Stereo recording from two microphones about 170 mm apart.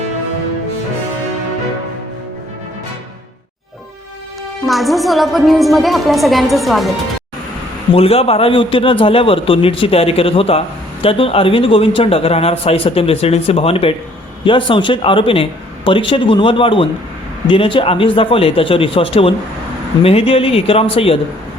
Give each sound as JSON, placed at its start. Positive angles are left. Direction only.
{"t": 4.6, "sound": "a woman's voice", "side_deg": 0}
{"t": 7.9, "sound": "speech", "side_deg": 35}